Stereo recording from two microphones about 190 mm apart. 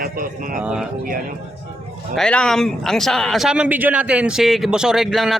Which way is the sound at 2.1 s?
5° left (ahead or behind).